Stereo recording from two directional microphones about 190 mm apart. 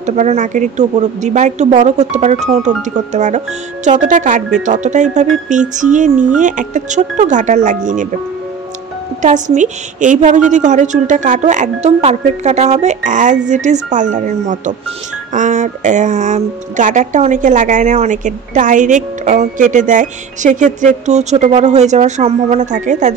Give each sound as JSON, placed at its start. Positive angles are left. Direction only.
{"t": 0.0, "sound": "speech", "side_deg": -35}
{"t": 9.2, "sound": "speech", "side_deg": -40}